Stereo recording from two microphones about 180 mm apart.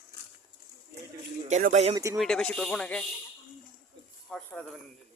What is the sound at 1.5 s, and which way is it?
Speech, 40° right (ahead or behind).